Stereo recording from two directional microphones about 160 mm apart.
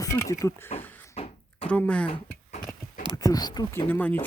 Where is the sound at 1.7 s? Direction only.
5° left (ahead or behind).